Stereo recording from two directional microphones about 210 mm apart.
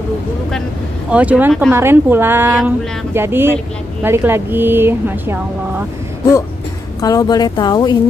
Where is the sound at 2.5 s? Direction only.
Centre (ahead or behind).